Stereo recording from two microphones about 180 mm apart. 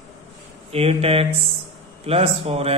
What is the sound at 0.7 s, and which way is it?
Speech, 35° right (ahead or behind).